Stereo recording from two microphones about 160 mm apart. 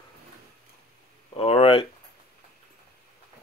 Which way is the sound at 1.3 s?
40° left (ahead or behind).